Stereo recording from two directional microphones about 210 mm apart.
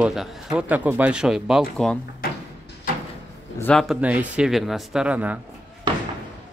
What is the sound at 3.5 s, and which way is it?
Speech, 10° left (ahead or behind).